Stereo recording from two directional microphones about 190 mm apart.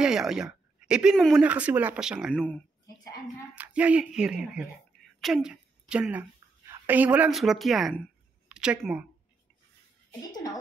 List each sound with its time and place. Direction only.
0.0 s speech: 5° right (ahead or behind)
3.5 s speech: 5° right (ahead or behind)
10.3 s speech: 20° left (ahead or behind)